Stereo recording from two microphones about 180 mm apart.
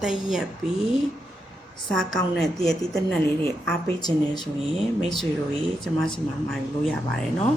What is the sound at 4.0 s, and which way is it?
Speech, 25° left (ahead or behind).